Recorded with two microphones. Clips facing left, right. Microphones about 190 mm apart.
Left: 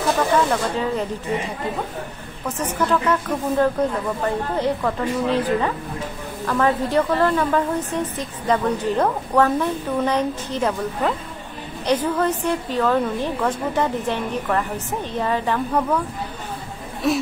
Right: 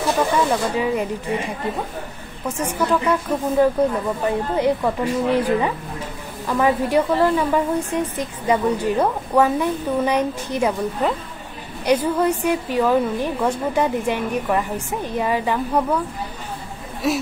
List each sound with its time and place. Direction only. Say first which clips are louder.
0.5 s a woman's voice: right 2 dB; 10° right (ahead or behind)
2.4 s a woman's voice: right 1 dB; 10° right (ahead or behind)
17.0 s speech: left 1 dB; centre (ahead or behind)